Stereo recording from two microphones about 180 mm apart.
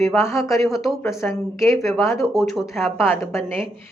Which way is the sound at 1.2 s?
15° left (ahead or behind).